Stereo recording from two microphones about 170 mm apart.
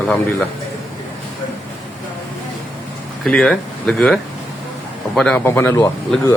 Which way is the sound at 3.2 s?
Centre (ahead or behind).